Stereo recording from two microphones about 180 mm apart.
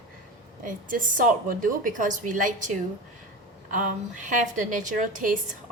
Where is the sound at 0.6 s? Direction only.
50° right (ahead or behind).